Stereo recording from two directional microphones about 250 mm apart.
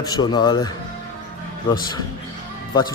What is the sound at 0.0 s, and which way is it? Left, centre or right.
Speech, centre.